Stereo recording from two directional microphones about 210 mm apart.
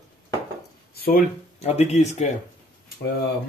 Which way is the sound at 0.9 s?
45° left (ahead or behind).